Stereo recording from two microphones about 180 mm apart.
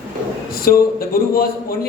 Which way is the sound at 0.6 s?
55° left (ahead or behind).